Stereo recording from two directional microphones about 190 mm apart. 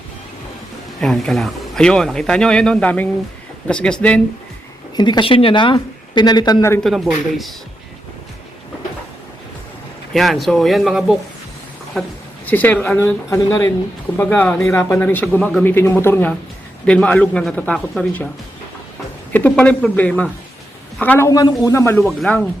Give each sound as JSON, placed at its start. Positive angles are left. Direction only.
{"t": 1.0, "sound": "speech", "side_deg": 0}
{"t": 4.9, "sound": "speech", "side_deg": 25}
{"t": 6.8, "sound": "speech", "side_deg": 0}
{"t": 10.1, "sound": "speech", "side_deg": 0}
{"t": 12.5, "sound": "a man's voice", "side_deg": 10}
{"t": 19.3, "sound": "a man's voice", "side_deg": 10}
{"t": 22.0, "sound": "speech", "side_deg": 0}